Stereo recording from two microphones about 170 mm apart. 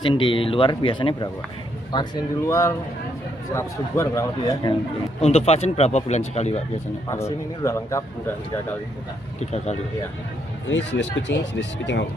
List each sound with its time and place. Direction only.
0.0 s speech: 30° left (ahead or behind)
5.2 s speech: 40° left (ahead or behind)
7.1 s speech: 15° left (ahead or behind)
9.4 s speech: 40° left (ahead or behind)
10.7 s speech: 90° left